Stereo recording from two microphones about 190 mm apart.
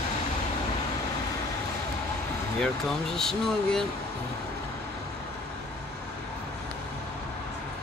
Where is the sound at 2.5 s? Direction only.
5° left (ahead or behind).